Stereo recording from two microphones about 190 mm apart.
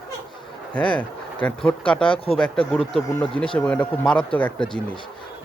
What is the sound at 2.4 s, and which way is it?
Speech, 5° left (ahead or behind).